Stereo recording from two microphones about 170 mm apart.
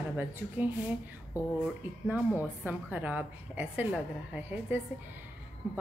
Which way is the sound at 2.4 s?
10° right (ahead or behind).